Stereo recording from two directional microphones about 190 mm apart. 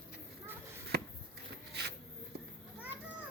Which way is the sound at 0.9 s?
55° right (ahead or behind).